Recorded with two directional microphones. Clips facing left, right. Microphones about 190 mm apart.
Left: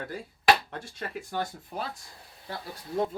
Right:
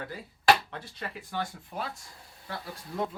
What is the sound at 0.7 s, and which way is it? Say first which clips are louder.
Speech: left 3 dB; 45° left (ahead or behind).